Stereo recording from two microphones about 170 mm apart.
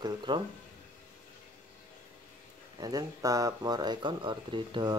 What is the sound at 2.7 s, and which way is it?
Speech, 20° right (ahead or behind).